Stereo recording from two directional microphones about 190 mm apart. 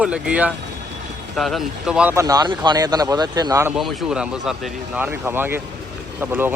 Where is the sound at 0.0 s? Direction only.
5° right (ahead or behind).